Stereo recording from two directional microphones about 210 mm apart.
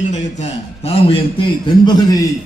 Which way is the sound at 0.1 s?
30° left (ahead or behind).